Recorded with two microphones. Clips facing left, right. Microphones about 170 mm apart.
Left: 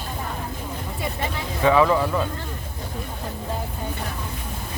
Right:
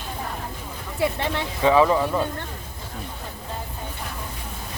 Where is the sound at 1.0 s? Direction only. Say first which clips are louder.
Right 6 dB; 75° right (ahead or behind).